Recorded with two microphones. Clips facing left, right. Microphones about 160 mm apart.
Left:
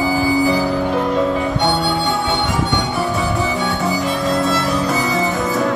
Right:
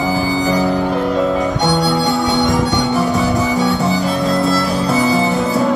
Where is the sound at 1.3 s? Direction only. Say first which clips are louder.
Right 2 dB; 40° right (ahead or behind).